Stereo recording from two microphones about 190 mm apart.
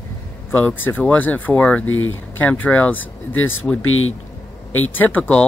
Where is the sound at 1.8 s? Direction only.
90° left.